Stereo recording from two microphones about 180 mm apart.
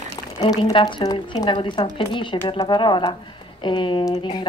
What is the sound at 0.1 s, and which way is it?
A woman's voice, 25° left (ahead or behind).